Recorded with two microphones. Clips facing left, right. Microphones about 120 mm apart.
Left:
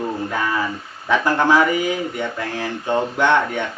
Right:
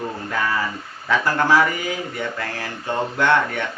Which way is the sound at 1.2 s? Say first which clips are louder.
Left 2 dB; 20° left (ahead or behind).